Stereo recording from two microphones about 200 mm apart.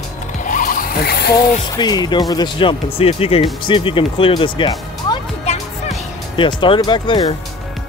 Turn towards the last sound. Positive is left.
turn(degrees=25)  # may be behind; listen again after turning